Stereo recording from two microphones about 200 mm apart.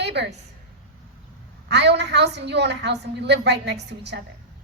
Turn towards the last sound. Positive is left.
turn(degrees=-60)  # may be behind; listen again after turning